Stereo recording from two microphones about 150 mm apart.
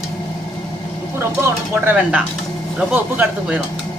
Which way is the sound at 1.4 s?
15° right (ahead or behind).